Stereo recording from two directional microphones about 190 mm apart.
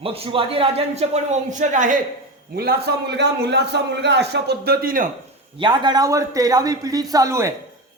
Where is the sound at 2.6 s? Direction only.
55° right (ahead or behind).